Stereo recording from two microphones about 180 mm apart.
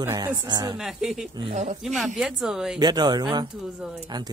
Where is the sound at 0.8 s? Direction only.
Centre (ahead or behind).